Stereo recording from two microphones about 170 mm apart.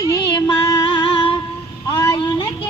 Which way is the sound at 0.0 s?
25° left (ahead or behind).